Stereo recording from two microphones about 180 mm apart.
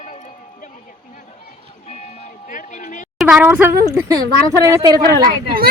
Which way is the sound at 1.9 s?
40° left (ahead or behind).